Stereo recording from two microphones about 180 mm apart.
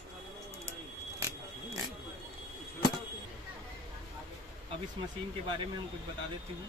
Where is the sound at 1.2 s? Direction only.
15° right (ahead or behind).